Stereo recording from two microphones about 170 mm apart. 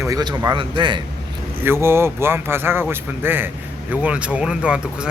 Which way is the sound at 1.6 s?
15° right (ahead or behind).